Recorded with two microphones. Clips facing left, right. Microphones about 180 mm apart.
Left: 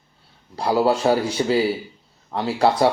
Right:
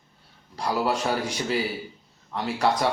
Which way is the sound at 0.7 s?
30° left (ahead or behind).